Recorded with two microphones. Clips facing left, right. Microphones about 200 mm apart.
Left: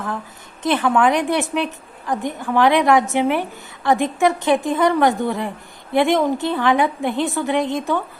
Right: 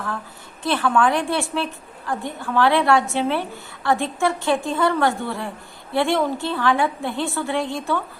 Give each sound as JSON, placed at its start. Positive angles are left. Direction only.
{"t": 0.6, "sound": "a woman's voice", "side_deg": 15}